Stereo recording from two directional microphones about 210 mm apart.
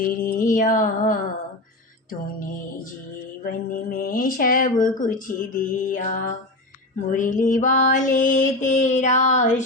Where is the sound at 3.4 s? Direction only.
45° left (ahead or behind).